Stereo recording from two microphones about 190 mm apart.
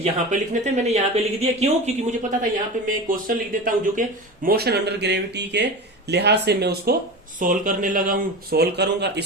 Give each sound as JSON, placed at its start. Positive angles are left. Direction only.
{"t": 0.0, "sound": "speech", "side_deg": -35}
{"t": 2.9, "sound": "speech", "side_deg": -45}
{"t": 7.3, "sound": "speech", "side_deg": -45}